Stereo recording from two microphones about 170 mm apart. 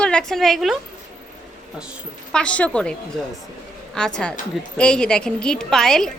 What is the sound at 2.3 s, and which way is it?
Speech, 5° left (ahead or behind).